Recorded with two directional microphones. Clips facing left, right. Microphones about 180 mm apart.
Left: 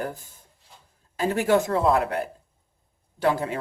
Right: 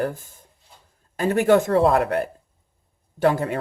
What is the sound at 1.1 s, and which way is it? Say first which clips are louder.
Speech: right 4 dB; 50° right (ahead or behind).